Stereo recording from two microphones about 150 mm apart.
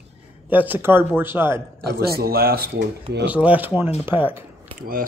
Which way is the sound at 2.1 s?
90° right.